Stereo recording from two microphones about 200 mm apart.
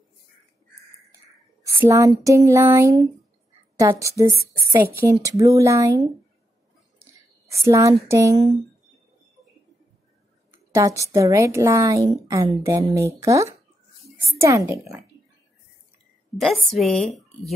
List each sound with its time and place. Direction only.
1.1 s a woman's voice: 15° right (ahead or behind)
7.6 s a woman's voice: 15° right (ahead or behind)
10.7 s a woman's voice: 15° right (ahead or behind)
16.3 s a woman's voice: centre (ahead or behind)